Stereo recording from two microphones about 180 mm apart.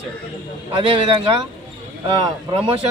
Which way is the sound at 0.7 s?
30° right (ahead or behind).